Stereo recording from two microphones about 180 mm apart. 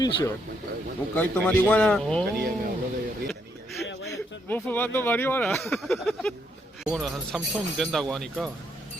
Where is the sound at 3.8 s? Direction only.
70° left (ahead or behind).